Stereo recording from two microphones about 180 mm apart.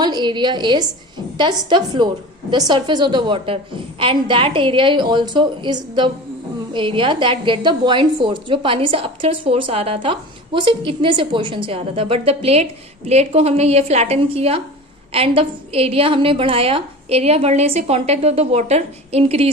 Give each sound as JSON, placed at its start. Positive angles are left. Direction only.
{"t": 0.0, "sound": "a woman's voice", "side_deg": -25}